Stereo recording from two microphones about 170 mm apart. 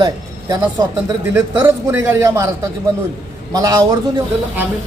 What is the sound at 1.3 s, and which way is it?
Speech, 15° right (ahead or behind).